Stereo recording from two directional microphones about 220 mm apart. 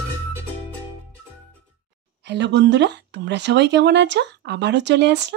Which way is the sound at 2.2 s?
50° right (ahead or behind).